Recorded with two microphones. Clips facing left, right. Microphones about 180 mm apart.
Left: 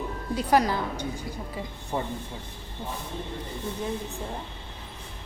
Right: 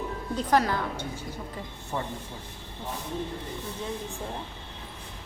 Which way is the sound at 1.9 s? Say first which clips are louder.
Left 2 dB; 25° left (ahead or behind).